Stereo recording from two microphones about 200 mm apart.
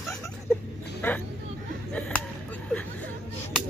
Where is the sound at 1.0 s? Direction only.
10° left (ahead or behind).